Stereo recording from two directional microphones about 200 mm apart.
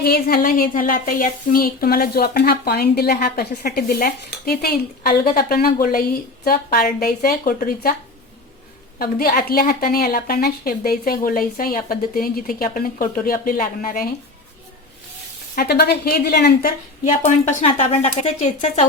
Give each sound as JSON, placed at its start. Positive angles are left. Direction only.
{"t": 0.0, "sound": "speech", "side_deg": 50}
{"t": 9.0, "sound": "speech", "side_deg": 50}
{"t": 15.5, "sound": "speech", "side_deg": 50}
{"t": 17.1, "sound": "a woman's voice", "side_deg": 35}